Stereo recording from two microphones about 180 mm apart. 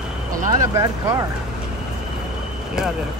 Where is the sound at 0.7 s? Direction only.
15° right (ahead or behind).